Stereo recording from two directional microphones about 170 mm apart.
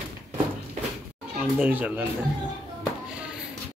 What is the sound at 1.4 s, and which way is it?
Speech, 10° right (ahead or behind).